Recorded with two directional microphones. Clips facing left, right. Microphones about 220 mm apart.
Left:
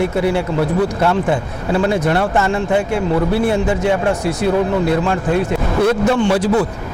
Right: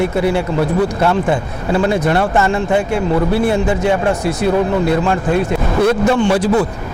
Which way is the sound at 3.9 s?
20° right (ahead or behind).